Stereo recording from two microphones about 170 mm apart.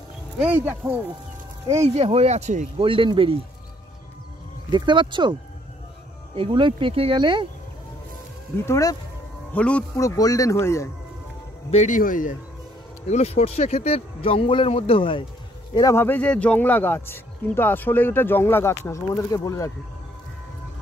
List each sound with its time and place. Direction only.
0.4 s speech: 10° right (ahead or behind)
2.0 s speech: 35° right (ahead or behind)
4.6 s speech: 25° right (ahead or behind)
6.3 s speech: 30° right (ahead or behind)
8.6 s speech: 20° left (ahead or behind)
9.5 s speech: 5° left (ahead or behind)
9.9 s speech: 20° left (ahead or behind)
11.7 s speech: 45° left (ahead or behind)
13.1 s speech: 40° left (ahead or behind)
15.7 s speech: 20° left (ahead or behind)